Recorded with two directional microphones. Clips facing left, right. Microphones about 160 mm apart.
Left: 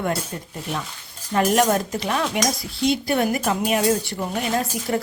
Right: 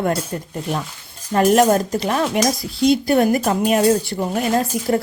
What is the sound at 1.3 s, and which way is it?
Speech, 40° right (ahead or behind).